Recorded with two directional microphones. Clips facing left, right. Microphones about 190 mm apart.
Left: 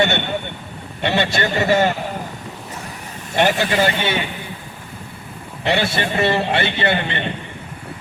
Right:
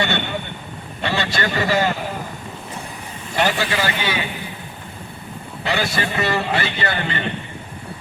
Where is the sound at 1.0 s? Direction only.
25° left (ahead or behind).